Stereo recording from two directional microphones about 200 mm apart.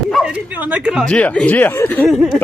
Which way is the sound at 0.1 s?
5° right (ahead or behind).